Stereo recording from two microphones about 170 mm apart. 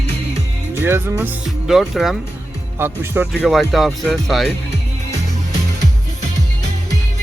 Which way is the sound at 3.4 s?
Centre (ahead or behind).